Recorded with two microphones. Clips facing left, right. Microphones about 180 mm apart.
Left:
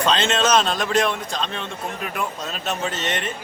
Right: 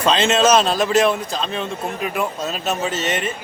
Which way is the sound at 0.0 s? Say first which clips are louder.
Right 4 dB; 5° right (ahead or behind).